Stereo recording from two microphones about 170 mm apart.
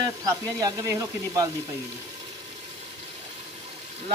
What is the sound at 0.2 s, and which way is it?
Speech, 20° right (ahead or behind).